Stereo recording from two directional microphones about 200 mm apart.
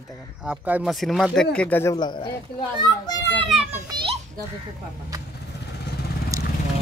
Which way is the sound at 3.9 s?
25° right (ahead or behind).